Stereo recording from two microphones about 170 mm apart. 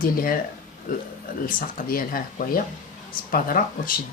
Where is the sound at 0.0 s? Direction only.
55° left (ahead or behind).